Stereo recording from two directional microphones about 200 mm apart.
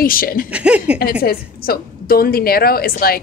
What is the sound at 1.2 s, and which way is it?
A woman's voice, 50° left (ahead or behind).